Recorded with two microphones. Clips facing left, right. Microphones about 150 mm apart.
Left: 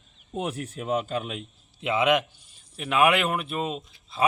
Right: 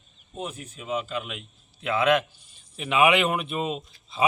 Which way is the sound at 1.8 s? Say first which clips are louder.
Even; 20° left (ahead or behind).